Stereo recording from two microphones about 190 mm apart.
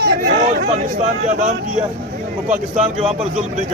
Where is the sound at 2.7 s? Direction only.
35° right (ahead or behind).